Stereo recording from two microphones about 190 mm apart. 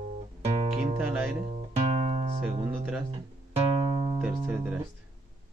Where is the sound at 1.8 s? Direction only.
30° right (ahead or behind).